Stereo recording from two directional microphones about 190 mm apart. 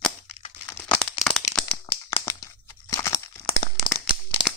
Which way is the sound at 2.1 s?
15° left (ahead or behind).